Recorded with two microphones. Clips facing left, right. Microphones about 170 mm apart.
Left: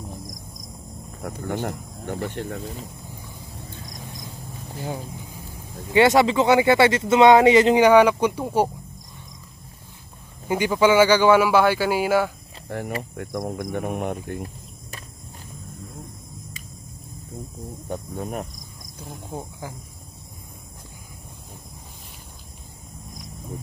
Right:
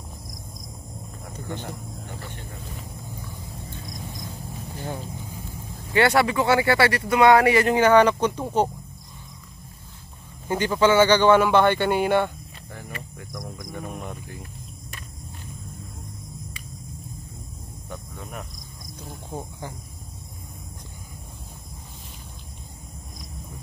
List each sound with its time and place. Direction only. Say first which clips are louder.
1.4 s speech: left 6 dB; 60° left (ahead or behind)
5.9 s speech: left 3 dB; 20° left (ahead or behind)
10.5 s speech: left 1 dB; 10° left (ahead or behind)
12.6 s speech: left 11 dB; 65° left (ahead or behind)
17.8 s speech: left 8 dB; 35° left (ahead or behind)